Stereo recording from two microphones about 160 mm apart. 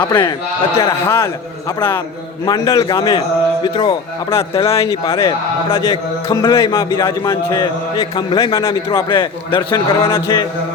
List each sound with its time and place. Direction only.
0.1 s a man's voice: 25° left (ahead or behind)
1.0 s a man's voice: 15° left (ahead or behind)
2.5 s a man's voice: 25° left (ahead or behind)
4.9 s a man's voice: 20° left (ahead or behind)